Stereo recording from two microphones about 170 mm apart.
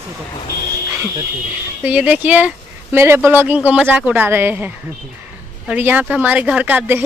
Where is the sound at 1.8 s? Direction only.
5° right (ahead or behind).